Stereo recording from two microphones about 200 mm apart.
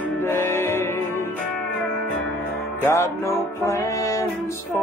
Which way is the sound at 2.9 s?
15° left (ahead or behind).